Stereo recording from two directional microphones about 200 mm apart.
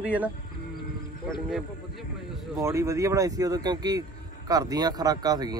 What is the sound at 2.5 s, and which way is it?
Speech, 15° right (ahead or behind).